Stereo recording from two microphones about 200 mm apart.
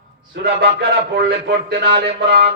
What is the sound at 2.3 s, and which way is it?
Music, 50° right (ahead or behind).